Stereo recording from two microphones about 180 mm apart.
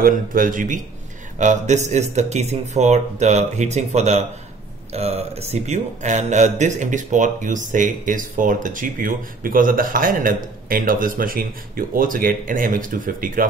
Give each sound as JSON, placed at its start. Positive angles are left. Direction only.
{"t": 0.0, "sound": "speech", "side_deg": -50}